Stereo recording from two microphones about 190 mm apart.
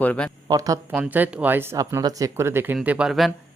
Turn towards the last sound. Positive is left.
turn(degrees=0)  # may be behind; listen again after turning